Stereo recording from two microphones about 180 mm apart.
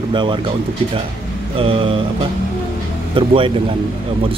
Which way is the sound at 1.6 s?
30° right (ahead or behind).